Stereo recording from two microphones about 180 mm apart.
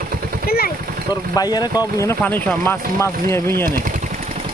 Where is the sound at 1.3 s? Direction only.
20° left (ahead or behind).